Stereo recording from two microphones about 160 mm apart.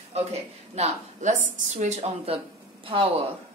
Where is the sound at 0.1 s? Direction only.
40° right (ahead or behind).